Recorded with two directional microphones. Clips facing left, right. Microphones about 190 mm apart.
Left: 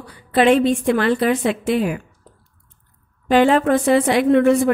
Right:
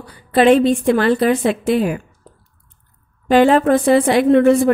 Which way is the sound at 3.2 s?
40° right (ahead or behind).